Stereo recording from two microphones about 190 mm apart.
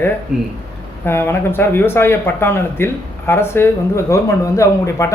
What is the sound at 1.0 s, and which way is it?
Speech, 10° left (ahead or behind).